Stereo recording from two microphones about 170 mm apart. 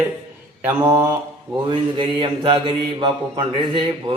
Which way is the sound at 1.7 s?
30° right (ahead or behind).